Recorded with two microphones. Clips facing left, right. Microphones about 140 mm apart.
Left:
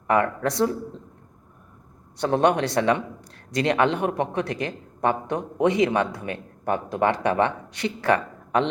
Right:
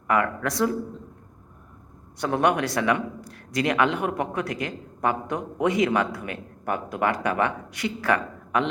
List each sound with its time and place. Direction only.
0.1 s speech: 30° left (ahead or behind)
2.2 s a man's voice: 30° left (ahead or behind)